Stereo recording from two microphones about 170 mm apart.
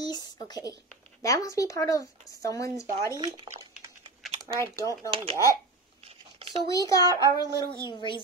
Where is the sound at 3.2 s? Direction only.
30° right (ahead or behind).